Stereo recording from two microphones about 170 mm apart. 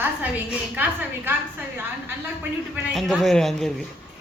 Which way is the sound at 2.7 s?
Centre (ahead or behind).